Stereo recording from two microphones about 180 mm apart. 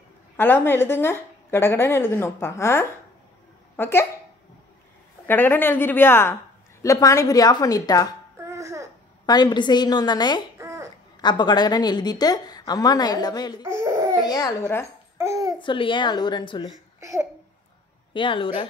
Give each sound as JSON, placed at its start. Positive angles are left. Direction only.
{"t": 0.4, "sound": "speech", "side_deg": 10}
{"t": 5.2, "sound": "a woman's voice", "side_deg": 10}
{"t": 8.4, "sound": "a sound", "side_deg": -15}
{"t": 9.2, "sound": "a woman's voice", "side_deg": 20}
{"t": 10.6, "sound": "babbling", "side_deg": -15}
{"t": 11.1, "sound": "a woman's voice", "side_deg": 25}
{"t": 13.7, "sound": "laughter", "side_deg": -15}
{"t": 14.2, "sound": "speech", "side_deg": 20}
{"t": 15.1, "sound": "babbling", "side_deg": -15}
{"t": 15.6, "sound": "a woman's voice", "side_deg": 25}
{"t": 17.0, "sound": "babbling", "side_deg": -15}
{"t": 18.1, "sound": "a woman's voice", "side_deg": 30}